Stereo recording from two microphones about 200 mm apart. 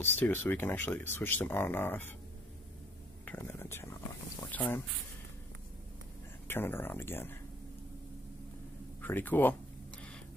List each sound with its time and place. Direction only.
0.0 s speech: 10° left (ahead or behind)
3.3 s speech: 10° left (ahead or behind)
6.4 s speech: 10° left (ahead or behind)
9.0 s speech: 10° left (ahead or behind)